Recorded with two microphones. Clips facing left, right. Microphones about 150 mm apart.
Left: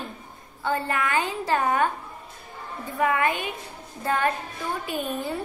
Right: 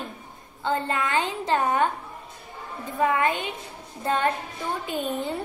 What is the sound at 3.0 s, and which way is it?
A woman's voice, 20° right (ahead or behind).